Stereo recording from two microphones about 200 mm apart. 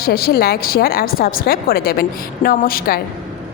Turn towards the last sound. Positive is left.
turn(degrees=50)  # may be behind; listen again after turning